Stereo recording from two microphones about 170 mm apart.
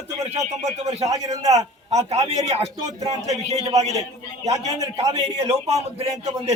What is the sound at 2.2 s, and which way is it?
Speech, 40° right (ahead or behind).